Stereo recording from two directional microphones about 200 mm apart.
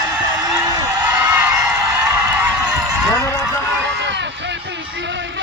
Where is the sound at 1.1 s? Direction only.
5° right (ahead or behind).